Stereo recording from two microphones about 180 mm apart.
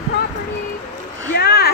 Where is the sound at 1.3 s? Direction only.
60° left (ahead or behind).